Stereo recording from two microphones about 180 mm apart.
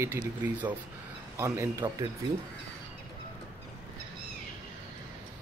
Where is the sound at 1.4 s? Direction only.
15° right (ahead or behind).